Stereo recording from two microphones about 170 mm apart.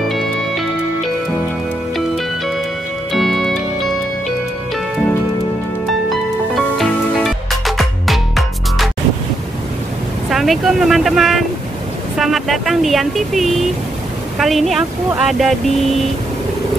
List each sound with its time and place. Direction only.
3.1 s music: centre (ahead or behind)
6.5 s music: centre (ahead or behind)
10.3 s speech: centre (ahead or behind)